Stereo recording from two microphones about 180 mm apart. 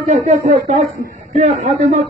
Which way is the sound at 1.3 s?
40° right (ahead or behind).